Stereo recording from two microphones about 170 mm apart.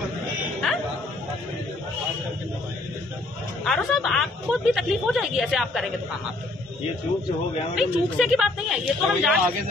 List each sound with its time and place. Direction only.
3.6 s a woman's voice: centre (ahead or behind)
7.7 s a woman's voice: 5° right (ahead or behind)